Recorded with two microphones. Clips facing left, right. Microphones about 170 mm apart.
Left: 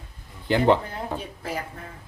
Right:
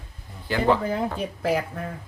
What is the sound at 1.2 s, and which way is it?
Speech, 75° right (ahead or behind).